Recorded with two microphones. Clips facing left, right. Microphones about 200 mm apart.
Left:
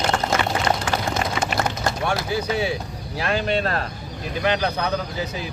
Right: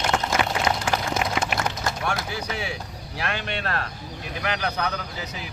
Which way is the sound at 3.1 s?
35° left (ahead or behind).